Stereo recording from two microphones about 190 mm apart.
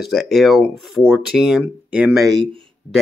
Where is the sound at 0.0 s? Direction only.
Centre (ahead or behind).